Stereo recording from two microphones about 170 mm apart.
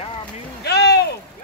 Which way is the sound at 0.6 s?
75° left (ahead or behind).